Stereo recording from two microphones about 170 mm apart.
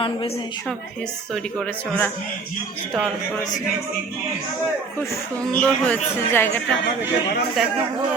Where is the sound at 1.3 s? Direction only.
5° left (ahead or behind).